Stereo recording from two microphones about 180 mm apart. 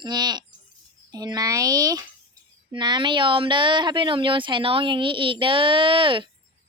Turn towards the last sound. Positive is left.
turn(degrees=-30)  # may be behind; listen again after turning